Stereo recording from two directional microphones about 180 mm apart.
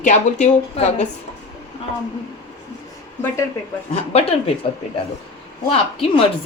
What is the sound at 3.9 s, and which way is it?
Speech, 35° left (ahead or behind).